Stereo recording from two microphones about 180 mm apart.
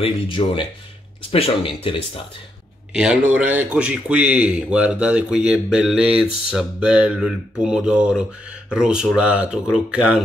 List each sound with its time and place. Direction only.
0.0 s speech: 30° left (ahead or behind)
2.9 s speech: 5° right (ahead or behind)